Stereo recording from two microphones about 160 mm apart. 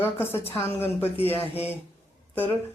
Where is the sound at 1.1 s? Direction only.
40° left (ahead or behind).